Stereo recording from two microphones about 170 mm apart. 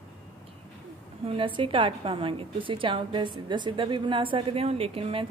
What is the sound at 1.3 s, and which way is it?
A woman's voice, 30° right (ahead or behind).